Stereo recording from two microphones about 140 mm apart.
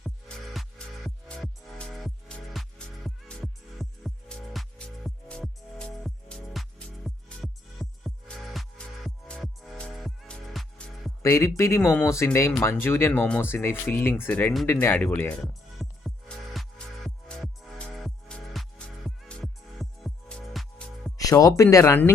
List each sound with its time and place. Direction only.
0.0 s music: centre (ahead or behind)
11.2 s speech: 20° left (ahead or behind)
15.8 s music: centre (ahead or behind)
21.2 s speech: 25° left (ahead or behind)